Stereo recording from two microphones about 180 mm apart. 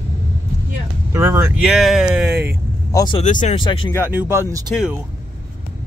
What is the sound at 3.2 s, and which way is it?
Speech, 45° left (ahead or behind).